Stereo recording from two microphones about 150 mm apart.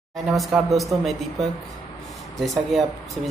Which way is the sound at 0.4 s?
Centre (ahead or behind).